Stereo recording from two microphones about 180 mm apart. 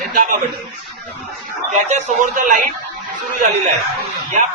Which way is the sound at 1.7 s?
45° right (ahead or behind).